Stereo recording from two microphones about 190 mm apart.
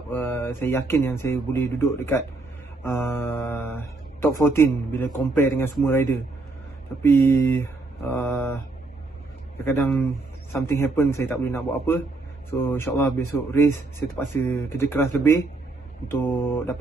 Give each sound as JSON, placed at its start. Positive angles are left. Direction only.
{"t": 0.1, "sound": "a man's voice", "side_deg": 10}